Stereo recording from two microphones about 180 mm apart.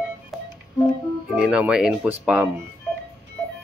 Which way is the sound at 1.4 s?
5° right (ahead or behind).